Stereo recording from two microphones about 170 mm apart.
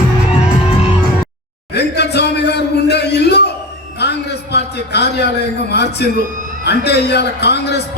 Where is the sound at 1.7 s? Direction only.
75° left (ahead or behind).